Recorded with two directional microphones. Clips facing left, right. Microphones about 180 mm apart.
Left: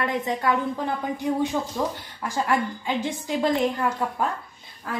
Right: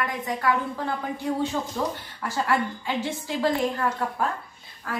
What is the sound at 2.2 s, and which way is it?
A woman's voice, 15° left (ahead or behind).